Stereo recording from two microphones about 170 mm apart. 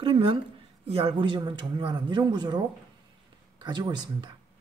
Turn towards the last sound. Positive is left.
turn(degrees=-25)  # may be behind; listen again after turning